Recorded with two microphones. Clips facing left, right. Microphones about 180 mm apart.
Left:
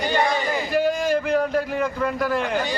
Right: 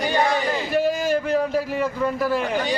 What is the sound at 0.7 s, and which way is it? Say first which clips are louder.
A man's voice: even; 5° right (ahead or behind).